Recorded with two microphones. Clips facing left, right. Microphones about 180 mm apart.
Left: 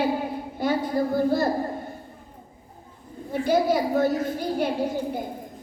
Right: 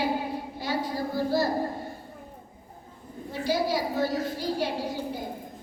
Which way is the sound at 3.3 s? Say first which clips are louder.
Left 5 dB; 50° left (ahead or behind).